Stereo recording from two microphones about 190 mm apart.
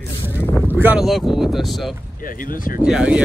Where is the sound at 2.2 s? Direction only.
45° left (ahead or behind).